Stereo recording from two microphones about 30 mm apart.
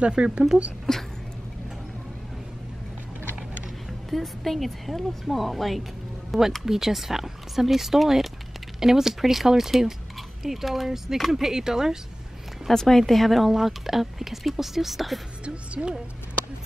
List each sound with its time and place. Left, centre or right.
0.2 s speech: right
0.9 s speech: centre
4.1 s a woman's voice: centre
12.7 s speech: centre
13.5 s speech: centre
15.4 s speech: right